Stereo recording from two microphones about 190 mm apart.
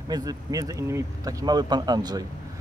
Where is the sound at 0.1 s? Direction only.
20° right (ahead or behind).